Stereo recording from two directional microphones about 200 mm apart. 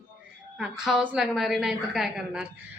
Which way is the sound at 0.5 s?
5° right (ahead or behind).